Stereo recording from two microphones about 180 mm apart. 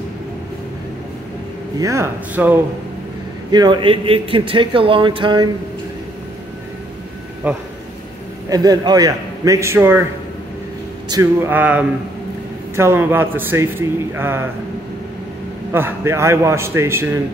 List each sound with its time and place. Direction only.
1.8 s speech: 15° right (ahead or behind)
3.5 s a man's voice: 25° right (ahead or behind)
7.4 s speech: 10° right (ahead or behind)
8.5 s speech: 20° right (ahead or behind)
11.1 s speech: 15° right (ahead or behind)
15.7 s speech: 15° right (ahead or behind)